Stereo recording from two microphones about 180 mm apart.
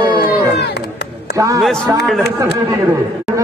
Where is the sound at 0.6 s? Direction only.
65° left (ahead or behind).